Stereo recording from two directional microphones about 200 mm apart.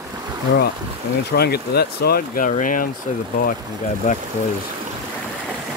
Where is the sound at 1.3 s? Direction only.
50° left (ahead or behind).